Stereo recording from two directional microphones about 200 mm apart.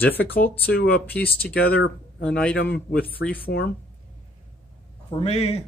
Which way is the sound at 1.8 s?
65° left (ahead or behind).